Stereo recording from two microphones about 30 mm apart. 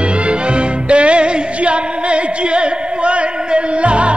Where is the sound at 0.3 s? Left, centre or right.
Right.